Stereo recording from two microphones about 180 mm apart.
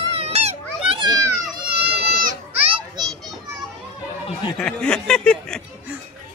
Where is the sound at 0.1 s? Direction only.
35° right (ahead or behind).